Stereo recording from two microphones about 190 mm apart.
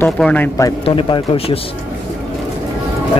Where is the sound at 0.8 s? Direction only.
30° left (ahead or behind).